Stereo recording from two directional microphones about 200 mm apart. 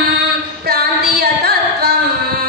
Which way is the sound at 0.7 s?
50° right (ahead or behind).